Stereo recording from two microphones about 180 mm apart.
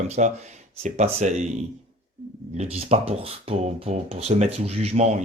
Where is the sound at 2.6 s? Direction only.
35° right (ahead or behind).